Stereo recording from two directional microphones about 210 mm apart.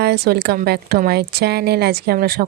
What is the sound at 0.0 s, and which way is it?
A woman's voice, 50° right (ahead or behind).